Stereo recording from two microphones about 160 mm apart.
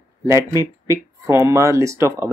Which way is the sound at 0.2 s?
20° right (ahead or behind).